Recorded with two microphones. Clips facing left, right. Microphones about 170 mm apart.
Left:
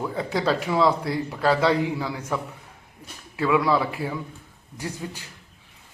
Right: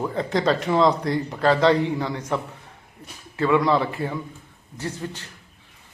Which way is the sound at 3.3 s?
5° left (ahead or behind).